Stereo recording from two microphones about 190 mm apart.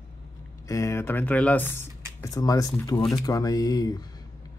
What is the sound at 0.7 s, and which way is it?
Speech, 15° left (ahead or behind).